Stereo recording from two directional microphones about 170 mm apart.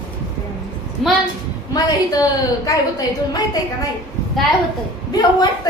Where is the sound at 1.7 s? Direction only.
25° left (ahead or behind).